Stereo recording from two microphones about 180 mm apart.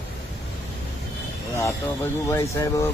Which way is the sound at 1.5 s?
15° left (ahead or behind).